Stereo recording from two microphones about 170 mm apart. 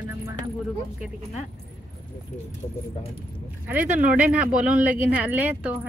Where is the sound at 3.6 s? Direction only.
10° right (ahead or behind).